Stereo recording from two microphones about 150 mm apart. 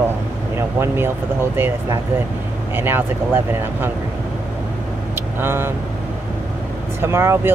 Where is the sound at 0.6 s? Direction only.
15° right (ahead or behind).